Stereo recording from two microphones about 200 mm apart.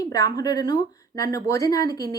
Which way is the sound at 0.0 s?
20° left (ahead or behind).